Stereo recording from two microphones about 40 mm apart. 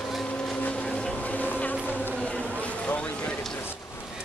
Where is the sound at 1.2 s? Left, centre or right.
Left.